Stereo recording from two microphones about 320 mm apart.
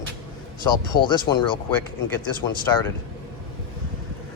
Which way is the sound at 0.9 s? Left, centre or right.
Centre.